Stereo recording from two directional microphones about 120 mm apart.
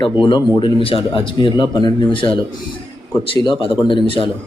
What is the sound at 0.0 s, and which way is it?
A man's voice, 40° left (ahead or behind).